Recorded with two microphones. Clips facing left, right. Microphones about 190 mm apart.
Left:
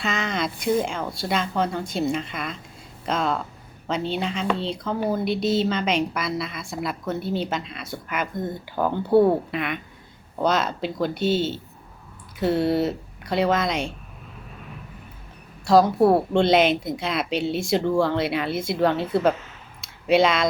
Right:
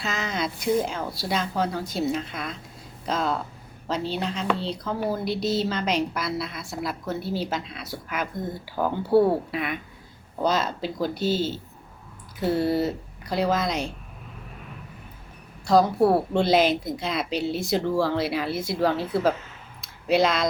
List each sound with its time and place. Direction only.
0.0 s a woman's voice: centre (ahead or behind)
11.1 s speech: 25° left (ahead or behind)
12.4 s a woman's voice: centre (ahead or behind)
15.6 s a woman's voice: centre (ahead or behind)